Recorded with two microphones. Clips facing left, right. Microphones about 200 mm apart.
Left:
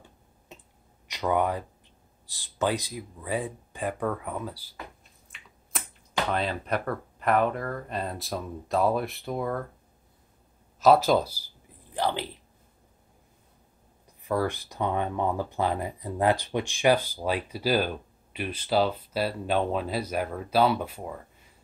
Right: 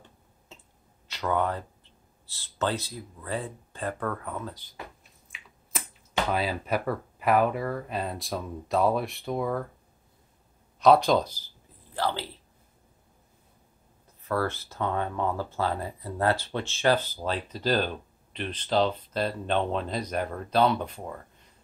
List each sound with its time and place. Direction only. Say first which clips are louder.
0.5 s a sound: left 3 dB; 15° left (ahead or behind)
1.0 s speech: left 2 dB; 15° left (ahead or behind)
5.3 s finger snapping: right 1 dB; centre (ahead or behind)
6.3 s speech: right 1 dB; 5° right (ahead or behind)
10.8 s speech: even; 5° left (ahead or behind)
14.2 s speech: left 1 dB; 15° left (ahead or behind)